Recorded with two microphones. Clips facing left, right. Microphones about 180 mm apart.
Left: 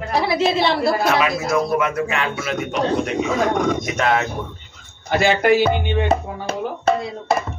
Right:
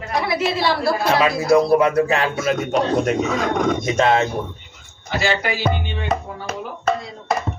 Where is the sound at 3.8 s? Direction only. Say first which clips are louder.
Right 3 dB; 25° right (ahead or behind).